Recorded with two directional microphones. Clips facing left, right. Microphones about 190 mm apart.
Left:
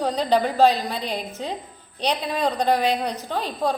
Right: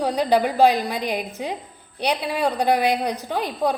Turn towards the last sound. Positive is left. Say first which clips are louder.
# right 2 dB
turn(degrees=-15)  # may be behind; listen again after turning